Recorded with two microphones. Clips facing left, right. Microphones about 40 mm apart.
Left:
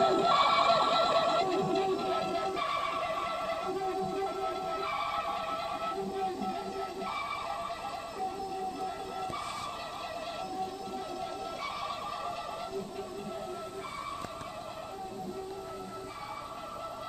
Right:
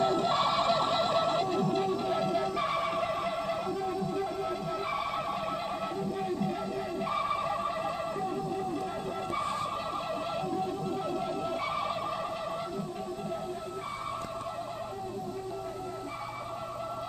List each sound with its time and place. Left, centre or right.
0.0 s music: centre
11.1 s music: centre